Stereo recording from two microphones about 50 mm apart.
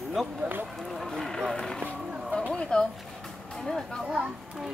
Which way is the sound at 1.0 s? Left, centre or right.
Centre.